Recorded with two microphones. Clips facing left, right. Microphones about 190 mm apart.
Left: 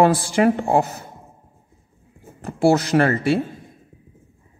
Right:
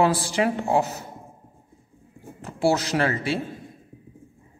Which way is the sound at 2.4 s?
50° left (ahead or behind).